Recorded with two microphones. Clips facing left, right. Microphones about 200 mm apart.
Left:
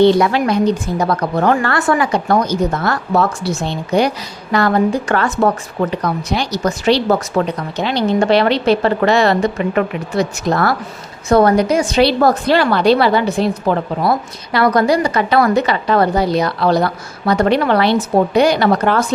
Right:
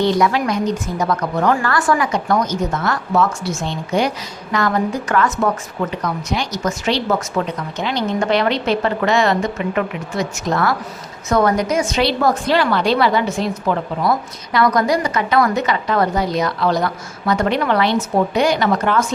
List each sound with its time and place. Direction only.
0.0 s a woman's voice: 30° left (ahead or behind)